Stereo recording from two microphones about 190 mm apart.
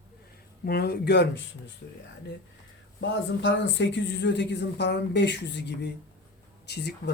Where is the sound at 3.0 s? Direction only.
70° left (ahead or behind).